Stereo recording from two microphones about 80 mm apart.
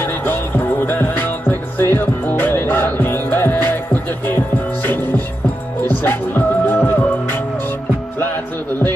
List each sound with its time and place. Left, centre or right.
0.0 s music: left
5.9 s music: left